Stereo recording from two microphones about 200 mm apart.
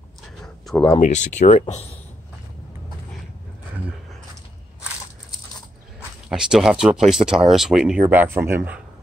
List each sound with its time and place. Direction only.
0.9 s speech: 35° left (ahead or behind)
6.2 s speech: 5° right (ahead or behind)